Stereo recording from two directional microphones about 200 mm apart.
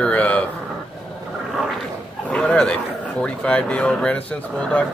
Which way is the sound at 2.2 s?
5° left (ahead or behind).